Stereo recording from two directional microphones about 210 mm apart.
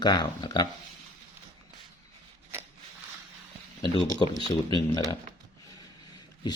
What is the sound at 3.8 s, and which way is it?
Speech, 25° left (ahead or behind).